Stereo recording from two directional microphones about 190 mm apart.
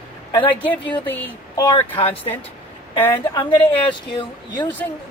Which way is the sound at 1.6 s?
25° left (ahead or behind).